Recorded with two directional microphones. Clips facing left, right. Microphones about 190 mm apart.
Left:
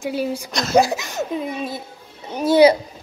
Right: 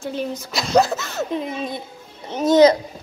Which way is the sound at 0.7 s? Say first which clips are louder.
Left 1 dB; 15° left (ahead or behind).